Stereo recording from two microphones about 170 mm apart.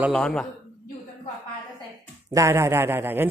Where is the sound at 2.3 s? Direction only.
15° right (ahead or behind).